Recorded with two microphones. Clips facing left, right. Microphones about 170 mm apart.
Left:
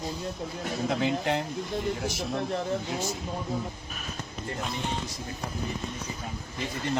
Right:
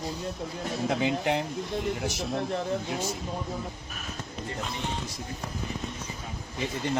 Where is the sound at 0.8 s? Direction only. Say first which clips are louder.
Right 1 dB; centre (ahead or behind).